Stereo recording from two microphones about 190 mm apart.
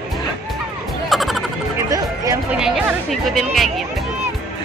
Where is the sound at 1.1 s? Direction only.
Centre (ahead or behind).